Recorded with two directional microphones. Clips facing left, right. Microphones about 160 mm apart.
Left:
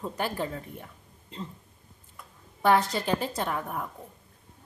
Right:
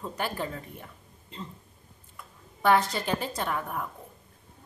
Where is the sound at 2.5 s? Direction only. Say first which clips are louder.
Even; 30° left (ahead or behind).